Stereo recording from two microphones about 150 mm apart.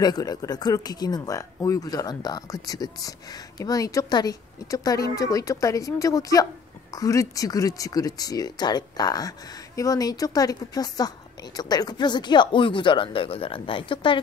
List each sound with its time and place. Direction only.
0.0 s speech: 25° left (ahead or behind)